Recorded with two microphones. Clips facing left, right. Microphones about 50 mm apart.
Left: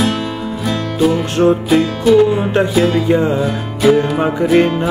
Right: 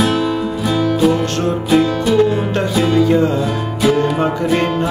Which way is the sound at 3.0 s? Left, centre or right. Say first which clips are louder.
Even; centre.